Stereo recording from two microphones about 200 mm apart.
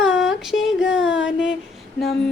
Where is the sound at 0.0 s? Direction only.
Centre (ahead or behind).